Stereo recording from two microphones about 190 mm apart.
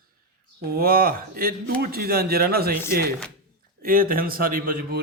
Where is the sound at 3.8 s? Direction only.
50° right (ahead or behind).